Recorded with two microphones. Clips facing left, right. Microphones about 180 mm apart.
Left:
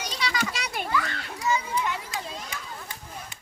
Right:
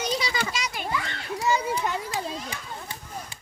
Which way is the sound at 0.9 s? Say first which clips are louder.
Left 1 dB; 25° right (ahead or behind).